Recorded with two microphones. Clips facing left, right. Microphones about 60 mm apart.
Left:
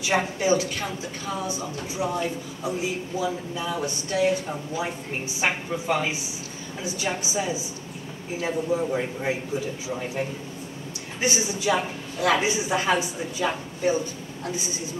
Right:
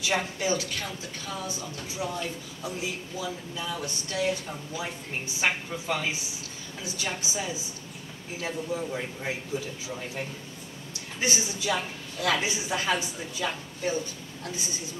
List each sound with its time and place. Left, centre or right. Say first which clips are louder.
0.0 s a woman's voice: left 4 dB; left